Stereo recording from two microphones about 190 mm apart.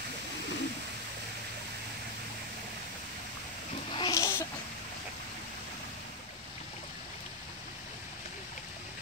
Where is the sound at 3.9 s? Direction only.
20° left (ahead or behind).